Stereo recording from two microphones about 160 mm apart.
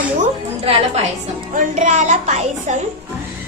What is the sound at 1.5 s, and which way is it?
Music, 55° right (ahead or behind).